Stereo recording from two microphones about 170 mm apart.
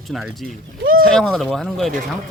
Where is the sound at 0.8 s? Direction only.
55° right (ahead or behind).